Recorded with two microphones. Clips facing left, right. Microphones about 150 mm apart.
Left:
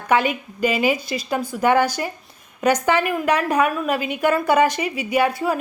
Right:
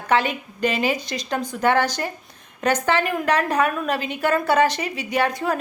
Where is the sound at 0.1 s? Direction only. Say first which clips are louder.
Left 2 dB; 10° left (ahead or behind).